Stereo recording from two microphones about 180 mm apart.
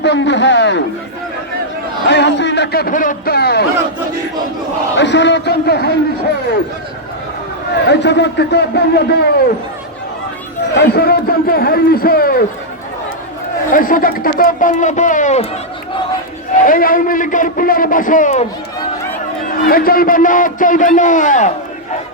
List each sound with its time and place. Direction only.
0.0 s speech: 75° left (ahead or behind)
2.0 s a man's voice: 75° left (ahead or behind)
4.9 s a man's voice: 80° left
7.9 s a man's voice: 75° left (ahead or behind)
10.8 s a man's voice: 60° left (ahead or behind)
13.7 s a man's voice: 50° left (ahead or behind)
16.6 s a man's voice: 50° left (ahead or behind)
19.6 s a man's voice: 55° left (ahead or behind)